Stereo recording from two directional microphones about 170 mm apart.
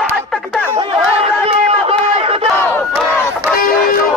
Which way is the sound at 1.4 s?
35° right (ahead or behind).